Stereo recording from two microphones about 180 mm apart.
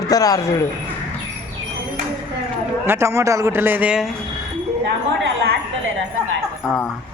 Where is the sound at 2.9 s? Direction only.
15° right (ahead or behind).